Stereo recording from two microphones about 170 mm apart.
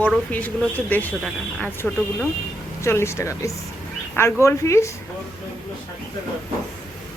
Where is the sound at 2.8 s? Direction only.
15° left (ahead or behind).